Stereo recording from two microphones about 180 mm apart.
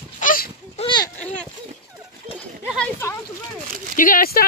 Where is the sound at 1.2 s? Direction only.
5° left (ahead or behind).